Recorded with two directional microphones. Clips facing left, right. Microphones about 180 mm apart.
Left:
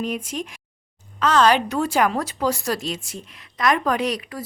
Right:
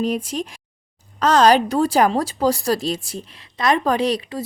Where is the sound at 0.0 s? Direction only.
35° right (ahead or behind).